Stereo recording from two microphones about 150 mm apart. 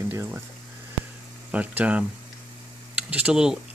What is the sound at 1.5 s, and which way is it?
Speech, 10° right (ahead or behind).